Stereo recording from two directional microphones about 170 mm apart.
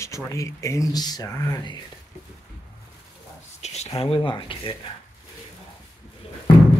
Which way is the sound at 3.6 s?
40° left (ahead or behind).